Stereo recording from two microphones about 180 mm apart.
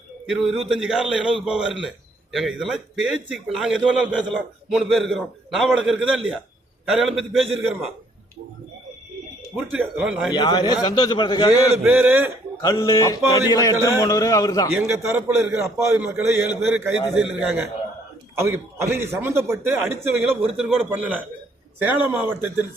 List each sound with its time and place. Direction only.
0.3 s a man's voice: centre (ahead or behind)
9.6 s a man's voice: 5° right (ahead or behind)
10.3 s a sound: 25° left (ahead or behind)
11.8 s a man's voice: 10° right (ahead or behind)
12.6 s a sound: 20° left (ahead or behind)
14.8 s a man's voice: 15° right (ahead or behind)
18.3 s a man's voice: 15° right (ahead or behind)
20.6 s a man's voice: centre (ahead or behind)